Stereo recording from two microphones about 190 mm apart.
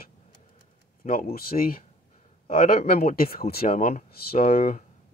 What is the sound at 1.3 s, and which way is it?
Speech, 50° left (ahead or behind).